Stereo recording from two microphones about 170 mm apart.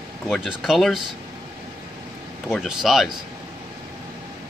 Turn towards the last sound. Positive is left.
turn(degrees=0)  # may be behind; listen again after turning